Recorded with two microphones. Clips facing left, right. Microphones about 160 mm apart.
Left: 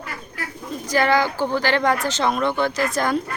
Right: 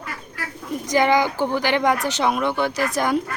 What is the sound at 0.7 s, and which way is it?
Speech, 15° right (ahead or behind).